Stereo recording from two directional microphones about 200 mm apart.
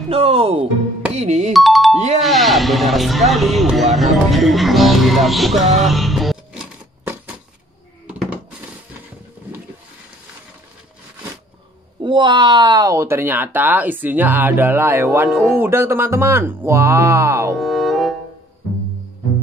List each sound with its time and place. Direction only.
0.1 s speech: 30° right (ahead or behind)
1.5 s speech: centre (ahead or behind)
5.8 s music: centre (ahead or behind)
8.1 s a sound: 5° right (ahead or behind)
12.0 s speech: 25° right (ahead or behind)
17.6 s music: centre (ahead or behind)